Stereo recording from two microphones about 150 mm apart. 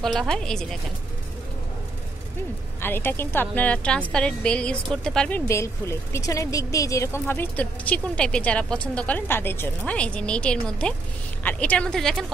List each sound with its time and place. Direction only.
0.0 s a woman's voice: 5° left (ahead or behind)
2.8 s a woman's voice: 15° left (ahead or behind)
5.5 s speech: 20° left (ahead or behind)